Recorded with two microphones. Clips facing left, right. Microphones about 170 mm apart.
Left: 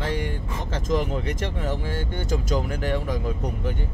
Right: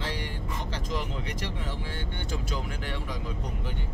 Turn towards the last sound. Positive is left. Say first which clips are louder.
# left 9 dB
turn(degrees=45)  # may be behind; listen again after turning